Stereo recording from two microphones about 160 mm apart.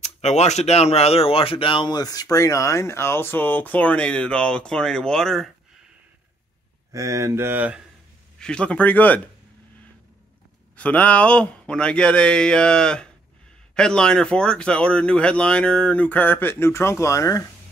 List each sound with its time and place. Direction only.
0.0 s speech: 45° left (ahead or behind); by 5.5 s centre (ahead or behind)
6.9 s speech: 20° right (ahead or behind)
8.4 s speech: 5° left (ahead or behind)
10.8 s speech: 10° left (ahead or behind)